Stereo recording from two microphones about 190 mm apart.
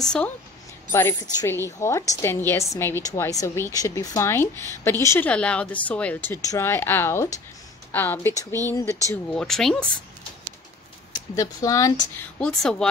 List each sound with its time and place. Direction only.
0.0 s speech: 5° left (ahead or behind)
0.9 s a woman's voice: 15° left (ahead or behind)
11.1 s speech: 15° left (ahead or behind)
12.4 s speech: 5° left (ahead or behind)